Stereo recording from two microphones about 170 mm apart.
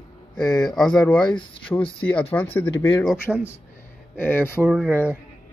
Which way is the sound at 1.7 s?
15° left (ahead or behind).